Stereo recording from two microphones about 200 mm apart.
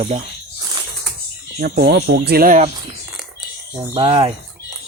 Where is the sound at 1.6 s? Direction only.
55° right (ahead or behind).